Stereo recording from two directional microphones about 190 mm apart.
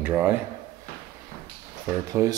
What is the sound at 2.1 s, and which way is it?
Speech, 20° right (ahead or behind).